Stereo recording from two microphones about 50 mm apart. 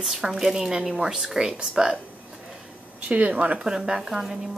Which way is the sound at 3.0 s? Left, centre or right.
Right.